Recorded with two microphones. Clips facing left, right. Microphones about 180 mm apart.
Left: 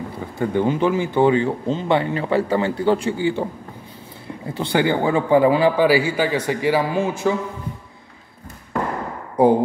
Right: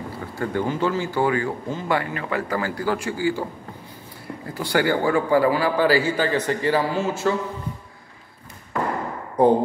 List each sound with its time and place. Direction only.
0.4 s speech: 20° left (ahead or behind)
4.6 s a man's voice: 20° left (ahead or behind)
9.4 s a man's voice: 10° left (ahead or behind)